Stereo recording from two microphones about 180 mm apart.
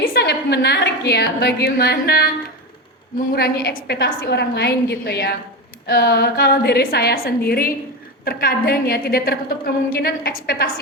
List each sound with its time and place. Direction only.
0.0 s a woman's voice: 60° left (ahead or behind)
3.3 s a woman's voice: 60° left (ahead or behind)